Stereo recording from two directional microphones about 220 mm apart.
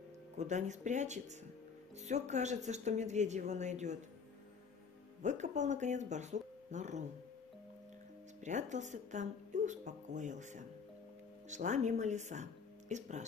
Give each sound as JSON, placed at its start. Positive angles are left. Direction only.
{"t": 0.4, "sound": "speech", "side_deg": -30}
{"t": 5.2, "sound": "speech", "side_deg": -30}
{"t": 8.5, "sound": "speech", "side_deg": -35}